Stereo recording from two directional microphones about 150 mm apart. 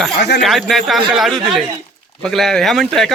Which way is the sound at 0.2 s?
90° left.